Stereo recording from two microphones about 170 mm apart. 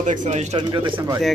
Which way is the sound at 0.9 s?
15° right (ahead or behind).